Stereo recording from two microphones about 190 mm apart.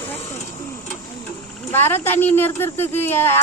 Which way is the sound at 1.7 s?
10° left (ahead or behind).